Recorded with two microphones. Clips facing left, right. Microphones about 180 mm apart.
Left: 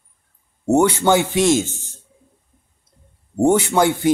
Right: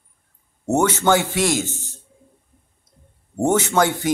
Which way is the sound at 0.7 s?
15° left (ahead or behind).